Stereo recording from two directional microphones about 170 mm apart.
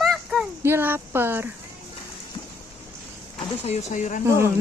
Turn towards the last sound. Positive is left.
turn(degrees=-15)  # may be behind; listen again after turning